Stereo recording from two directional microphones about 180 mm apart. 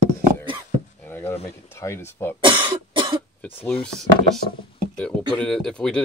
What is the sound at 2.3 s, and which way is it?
Cough, 25° right (ahead or behind).